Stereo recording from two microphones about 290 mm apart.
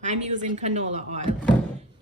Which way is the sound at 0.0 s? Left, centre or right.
Right.